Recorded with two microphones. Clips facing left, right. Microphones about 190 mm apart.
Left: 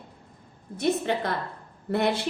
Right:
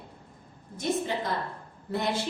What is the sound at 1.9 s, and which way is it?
Speech, 65° left (ahead or behind).